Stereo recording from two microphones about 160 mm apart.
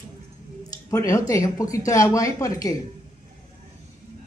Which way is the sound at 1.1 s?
20° left (ahead or behind).